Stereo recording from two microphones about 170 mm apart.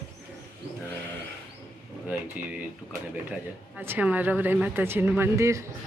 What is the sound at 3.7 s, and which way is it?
A woman's voice, 10° right (ahead or behind).